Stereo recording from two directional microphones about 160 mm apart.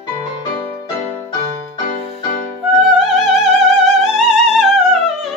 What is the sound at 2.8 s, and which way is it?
Music, 5° right (ahead or behind).